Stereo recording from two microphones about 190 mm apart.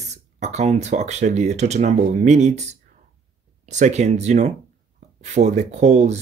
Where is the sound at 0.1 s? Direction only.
35° right (ahead or behind).